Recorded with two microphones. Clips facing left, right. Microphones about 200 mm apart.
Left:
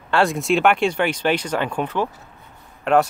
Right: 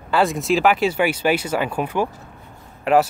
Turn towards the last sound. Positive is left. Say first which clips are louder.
# right 1 dB
turn(degrees=-5)  # may be behind; listen again after turning